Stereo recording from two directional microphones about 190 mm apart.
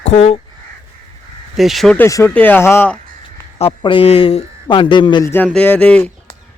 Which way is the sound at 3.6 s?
30° left (ahead or behind).